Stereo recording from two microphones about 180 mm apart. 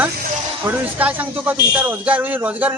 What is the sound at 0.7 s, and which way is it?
Speech, 10° right (ahead or behind).